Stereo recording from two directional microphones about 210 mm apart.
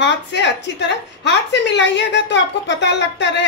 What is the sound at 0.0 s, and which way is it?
A woman's voice, 55° left (ahead or behind).